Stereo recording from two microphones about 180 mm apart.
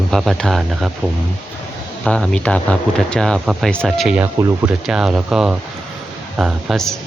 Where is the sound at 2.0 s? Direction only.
5° left (ahead or behind).